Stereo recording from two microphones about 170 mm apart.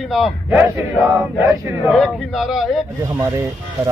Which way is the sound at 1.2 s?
15° right (ahead or behind).